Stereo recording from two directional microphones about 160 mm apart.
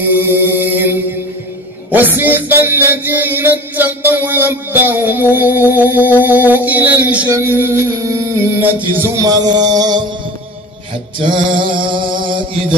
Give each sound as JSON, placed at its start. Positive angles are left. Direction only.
{"t": 0.0, "sound": "music", "side_deg": -10}
{"t": 9.2, "sound": "mantra", "side_deg": -25}
{"t": 11.5, "sound": "a sound", "side_deg": -30}